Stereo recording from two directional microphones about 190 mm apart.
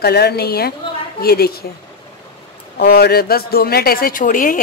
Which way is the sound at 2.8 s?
55° left (ahead or behind).